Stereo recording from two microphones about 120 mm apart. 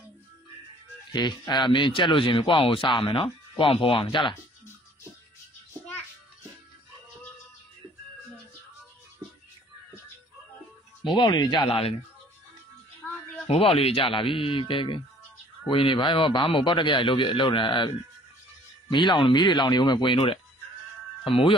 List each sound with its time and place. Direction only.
1.1 s speech: 35° left (ahead or behind)
11.1 s speech: 40° left (ahead or behind)
11.6 s speech: 55° left (ahead or behind)
13.5 s speech: 50° left (ahead or behind)